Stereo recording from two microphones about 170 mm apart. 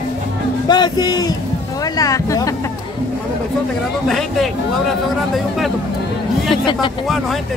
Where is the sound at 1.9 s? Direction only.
20° left (ahead or behind).